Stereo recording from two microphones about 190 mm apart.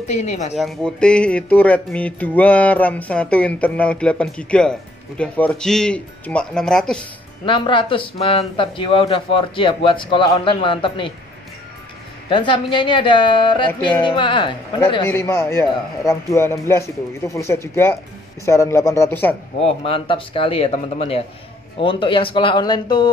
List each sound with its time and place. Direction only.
0.1 s speech: 35° left (ahead or behind)
0.6 s speech: 5° left (ahead or behind)
7.4 s speech: 25° left (ahead or behind)
12.3 s speech: 25° left (ahead or behind)
15.0 s a man's voice: 15° left (ahead or behind)
19.8 s speech: 30° left (ahead or behind)